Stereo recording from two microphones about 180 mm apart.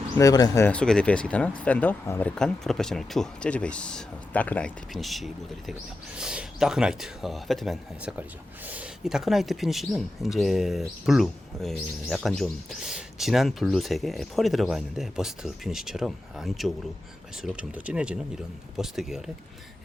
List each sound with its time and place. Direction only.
0.2 s speech: 20° left (ahead or behind)
0.7 s speech: 5° left (ahead or behind)